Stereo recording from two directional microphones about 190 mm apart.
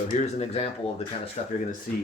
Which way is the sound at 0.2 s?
35° left (ahead or behind).